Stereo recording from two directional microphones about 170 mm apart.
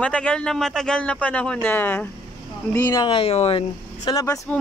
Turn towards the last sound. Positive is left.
turn(degrees=20)  # may be behind; listen again after turning